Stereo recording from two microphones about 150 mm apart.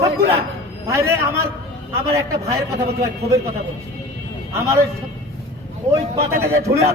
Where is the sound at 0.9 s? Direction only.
20° right (ahead or behind).